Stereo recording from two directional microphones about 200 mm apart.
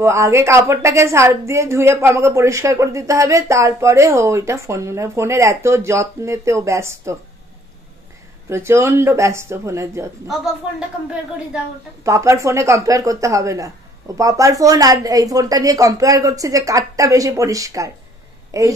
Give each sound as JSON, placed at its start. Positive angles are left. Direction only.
{"t": 0.0, "sound": "a woman's voice", "side_deg": -15}
{"t": 8.5, "sound": "a woman's voice", "side_deg": -15}
{"t": 10.2, "sound": "speech", "side_deg": 0}
{"t": 12.0, "sound": "a woman's voice", "side_deg": -15}